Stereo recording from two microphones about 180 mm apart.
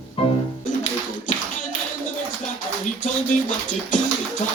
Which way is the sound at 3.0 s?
45° left (ahead or behind).